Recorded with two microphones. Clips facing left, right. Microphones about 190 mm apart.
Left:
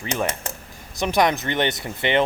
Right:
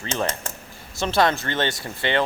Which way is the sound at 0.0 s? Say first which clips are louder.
Left 1 dB; 15° left (ahead or behind).